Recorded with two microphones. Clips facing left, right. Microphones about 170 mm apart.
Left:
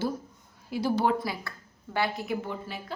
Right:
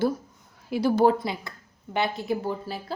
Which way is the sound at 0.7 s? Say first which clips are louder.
Right 6 dB; 65° right (ahead or behind).